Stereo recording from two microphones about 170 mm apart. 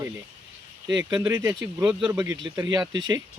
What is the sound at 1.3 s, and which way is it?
Speech, 20° right (ahead or behind).